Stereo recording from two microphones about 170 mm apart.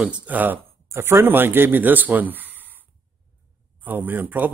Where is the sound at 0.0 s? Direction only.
5° right (ahead or behind).